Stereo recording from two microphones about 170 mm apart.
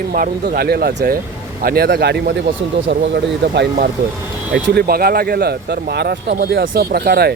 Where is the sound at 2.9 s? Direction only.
80° right.